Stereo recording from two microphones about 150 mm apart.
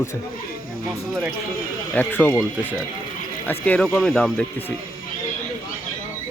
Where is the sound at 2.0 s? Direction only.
10° left (ahead or behind).